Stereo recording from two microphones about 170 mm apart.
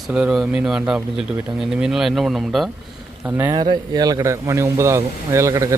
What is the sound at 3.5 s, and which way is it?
Speech, 25° right (ahead or behind).